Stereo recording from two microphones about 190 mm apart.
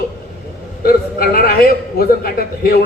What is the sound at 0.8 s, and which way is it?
A man's voice, 50° left (ahead or behind).